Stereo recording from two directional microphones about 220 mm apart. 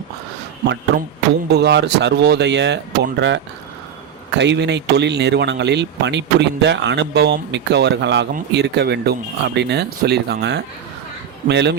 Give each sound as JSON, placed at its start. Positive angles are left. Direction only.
{"t": 1.5, "sound": "speech", "side_deg": -50}